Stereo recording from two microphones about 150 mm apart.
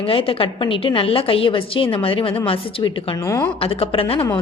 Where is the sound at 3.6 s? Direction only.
40° left (ahead or behind).